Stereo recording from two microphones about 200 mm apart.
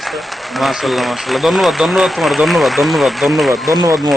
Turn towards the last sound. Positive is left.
turn(degrees=0)  # may be behind; listen again after turning